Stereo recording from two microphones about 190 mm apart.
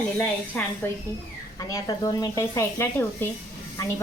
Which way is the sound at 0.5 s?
10° left (ahead or behind).